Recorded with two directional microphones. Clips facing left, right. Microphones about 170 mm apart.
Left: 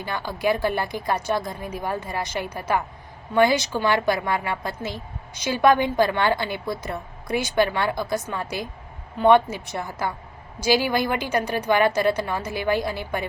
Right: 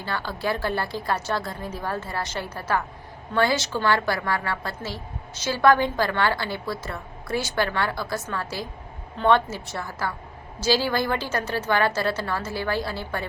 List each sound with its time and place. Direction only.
0.0 s a woman's voice: 15° left (ahead or behind)